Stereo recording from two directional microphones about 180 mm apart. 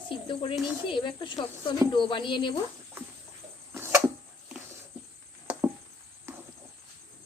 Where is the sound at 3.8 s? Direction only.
15° right (ahead or behind).